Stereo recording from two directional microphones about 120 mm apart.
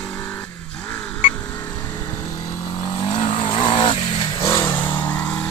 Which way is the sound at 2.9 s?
40° left (ahead or behind).